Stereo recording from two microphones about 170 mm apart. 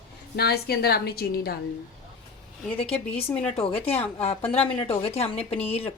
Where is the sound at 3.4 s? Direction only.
35° left (ahead or behind).